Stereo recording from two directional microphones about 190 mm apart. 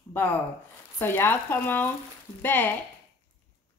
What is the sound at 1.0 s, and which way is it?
A woman's voice, 10° left (ahead or behind).